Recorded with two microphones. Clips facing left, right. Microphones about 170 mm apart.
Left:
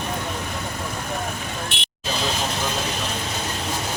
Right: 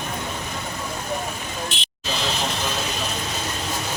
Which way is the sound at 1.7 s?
60° left (ahead or behind).